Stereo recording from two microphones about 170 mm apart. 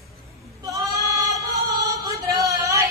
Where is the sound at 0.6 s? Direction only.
20° right (ahead or behind).